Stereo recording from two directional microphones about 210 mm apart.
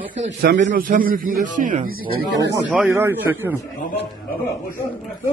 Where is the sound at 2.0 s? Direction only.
55° right (ahead or behind).